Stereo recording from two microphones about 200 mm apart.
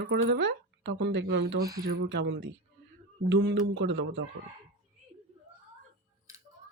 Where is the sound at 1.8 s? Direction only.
60° right (ahead or behind).